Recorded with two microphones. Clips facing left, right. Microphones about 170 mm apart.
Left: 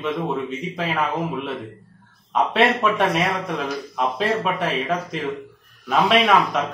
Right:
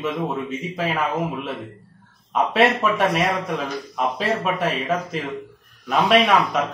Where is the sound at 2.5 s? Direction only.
Centre (ahead or behind).